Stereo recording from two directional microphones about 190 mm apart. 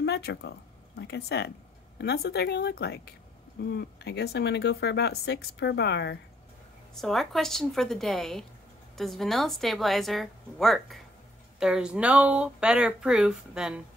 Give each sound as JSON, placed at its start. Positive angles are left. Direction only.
{"t": 0.0, "sound": "speech", "side_deg": 60}
{"t": 7.0, "sound": "speech", "side_deg": 0}